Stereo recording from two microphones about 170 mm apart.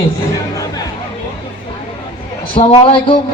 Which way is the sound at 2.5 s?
35° left (ahead or behind).